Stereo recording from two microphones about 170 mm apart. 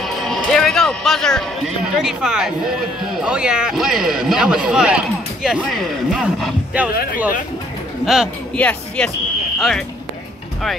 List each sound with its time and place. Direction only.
0.0 s music: centre (ahead or behind)
2.0 s speech: 5° right (ahead or behind)
6.9 s speech: 60° left (ahead or behind)
8.0 s speech: centre (ahead or behind)